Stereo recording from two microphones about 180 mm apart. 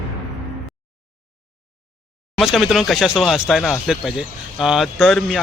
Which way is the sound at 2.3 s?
Centre (ahead or behind).